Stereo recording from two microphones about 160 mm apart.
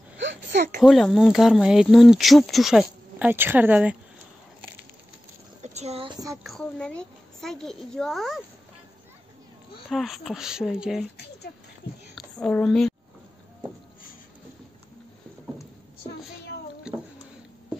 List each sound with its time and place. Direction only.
0.7 s speech: centre (ahead or behind)
5.6 s a sound: 40° right (ahead or behind)
6.4 s speech: 5° left (ahead or behind)
9.8 s speech: centre (ahead or behind)
12.2 s a woman's voice: 5° left (ahead or behind)